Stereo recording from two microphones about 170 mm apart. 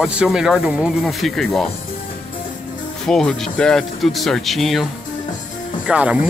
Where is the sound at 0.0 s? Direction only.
5° right (ahead or behind).